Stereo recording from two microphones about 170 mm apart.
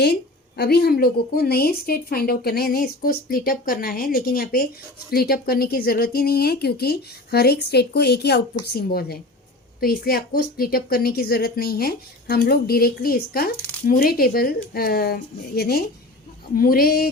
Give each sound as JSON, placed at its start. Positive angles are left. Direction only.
{"t": 0.0, "sound": "a woman's voice", "side_deg": 70}
{"t": 16.6, "sound": "a woman's voice", "side_deg": 60}